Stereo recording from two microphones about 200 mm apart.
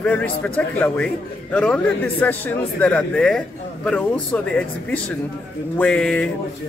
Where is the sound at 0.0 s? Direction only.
5° left (ahead or behind).